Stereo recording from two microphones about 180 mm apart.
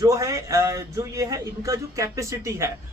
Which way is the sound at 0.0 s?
20° right (ahead or behind).